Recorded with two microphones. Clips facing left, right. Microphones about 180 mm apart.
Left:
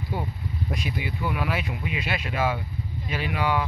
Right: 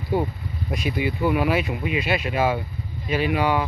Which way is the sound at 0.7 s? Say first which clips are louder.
Right 12 dB; 10° right (ahead or behind).